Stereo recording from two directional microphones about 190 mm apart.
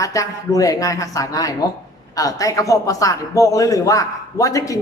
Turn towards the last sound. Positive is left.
turn(degrees=15)  # may be behind; listen again after turning